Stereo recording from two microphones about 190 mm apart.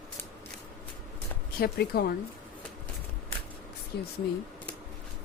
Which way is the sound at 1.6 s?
55° left (ahead or behind).